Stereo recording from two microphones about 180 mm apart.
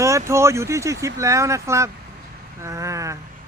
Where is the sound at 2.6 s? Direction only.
15° right (ahead or behind).